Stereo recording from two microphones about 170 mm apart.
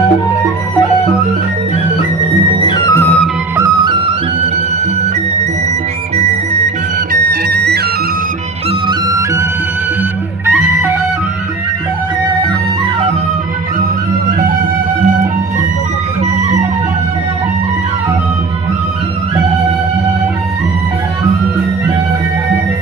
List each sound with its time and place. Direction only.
2.6 s music: 20° left (ahead or behind)
3.5 s music: 20° right (ahead or behind)
7.1 s music: 70° right (ahead or behind)
8.8 s music: 20° right (ahead or behind)